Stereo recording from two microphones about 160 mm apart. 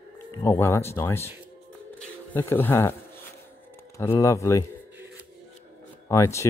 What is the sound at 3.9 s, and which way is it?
Speech, 15° left (ahead or behind).